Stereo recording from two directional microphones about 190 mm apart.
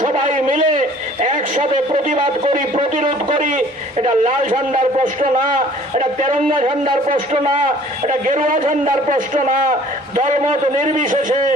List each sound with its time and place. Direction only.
0.0 s a sound: 45° right (ahead or behind)
1.7 s speech: 30° right (ahead or behind)
4.5 s a man's voice: 40° right (ahead or behind)
6.5 s a man's voice: 30° right (ahead or behind)
7.6 s a man's voice: 40° right (ahead or behind)